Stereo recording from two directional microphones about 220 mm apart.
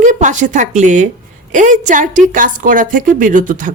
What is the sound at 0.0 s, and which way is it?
A woman's voice, 35° right (ahead or behind).